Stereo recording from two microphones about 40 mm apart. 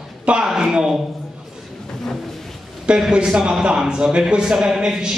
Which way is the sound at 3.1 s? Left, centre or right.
Centre.